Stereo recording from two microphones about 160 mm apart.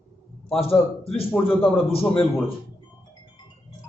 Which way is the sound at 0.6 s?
35° left (ahead or behind).